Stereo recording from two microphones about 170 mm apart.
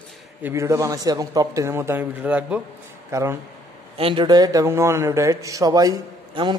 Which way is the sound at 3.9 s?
30° right (ahead or behind).